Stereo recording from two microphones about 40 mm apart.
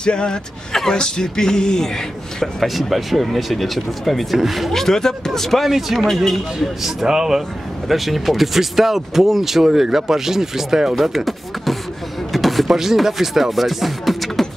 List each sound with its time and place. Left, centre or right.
0.0 s speech: left
0.9 s music: centre
2.4 s speech: centre
7.9 s speech: centre
11.0 s speech: centre
12.3 s a sound: centre
12.6 s speech: centre